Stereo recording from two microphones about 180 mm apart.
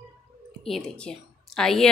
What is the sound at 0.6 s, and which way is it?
Speech, 5° left (ahead or behind).